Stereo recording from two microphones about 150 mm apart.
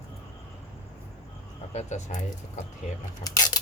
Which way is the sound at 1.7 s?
50° left (ahead or behind).